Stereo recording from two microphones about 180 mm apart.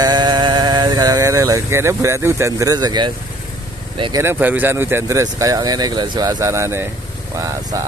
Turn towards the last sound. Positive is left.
turn(degrees=-20)  # may be behind; listen again after turning